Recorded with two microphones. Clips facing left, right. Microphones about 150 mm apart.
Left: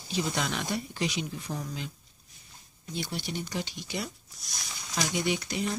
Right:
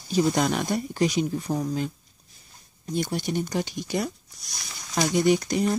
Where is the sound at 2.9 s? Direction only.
45° right (ahead or behind).